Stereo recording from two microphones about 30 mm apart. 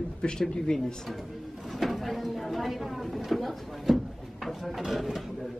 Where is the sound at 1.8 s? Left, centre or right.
Centre.